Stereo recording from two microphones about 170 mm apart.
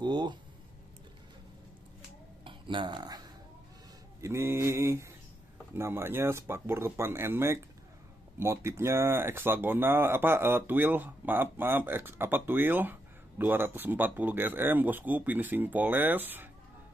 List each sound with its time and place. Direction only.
0.0 s a sound: 25° right (ahead or behind)
2.4 s speech: 30° right (ahead or behind)
4.2 s speech: 15° right (ahead or behind)